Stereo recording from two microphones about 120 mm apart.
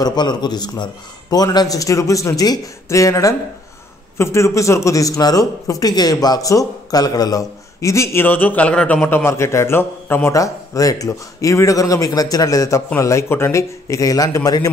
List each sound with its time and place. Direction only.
0.0 s a man's voice: 35° left (ahead or behind); by 9.0 s 10° left (ahead or behind)
9.0 s a man's voice: 20° left (ahead or behind)